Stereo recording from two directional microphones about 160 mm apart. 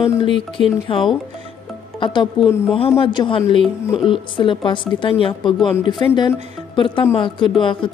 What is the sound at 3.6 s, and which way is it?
Speech, centre (ahead or behind).